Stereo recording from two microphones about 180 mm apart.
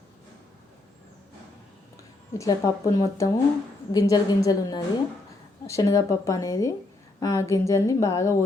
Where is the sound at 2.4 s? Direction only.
20° left (ahead or behind).